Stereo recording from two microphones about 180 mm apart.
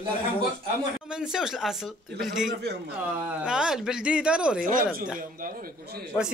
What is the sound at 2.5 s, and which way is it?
Speech, 65° right (ahead or behind).